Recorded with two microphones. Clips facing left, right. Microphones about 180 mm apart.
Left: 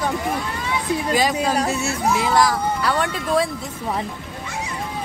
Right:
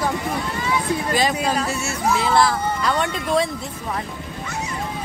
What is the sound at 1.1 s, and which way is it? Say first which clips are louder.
Speech: left 2 dB; 10° left (ahead or behind).